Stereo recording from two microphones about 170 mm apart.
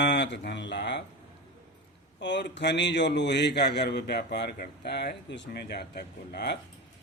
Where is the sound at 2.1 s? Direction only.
90° left.